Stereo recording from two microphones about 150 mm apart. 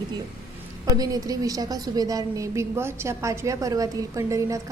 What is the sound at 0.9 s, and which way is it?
A woman's voice, 25° right (ahead or behind).